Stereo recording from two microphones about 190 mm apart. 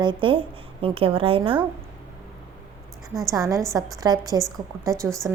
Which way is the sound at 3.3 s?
15° right (ahead or behind).